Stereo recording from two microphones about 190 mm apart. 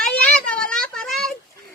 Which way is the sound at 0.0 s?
5° left (ahead or behind).